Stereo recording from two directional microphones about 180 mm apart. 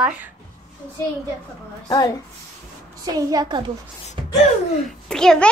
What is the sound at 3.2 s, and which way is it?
Speech, 20° right (ahead or behind).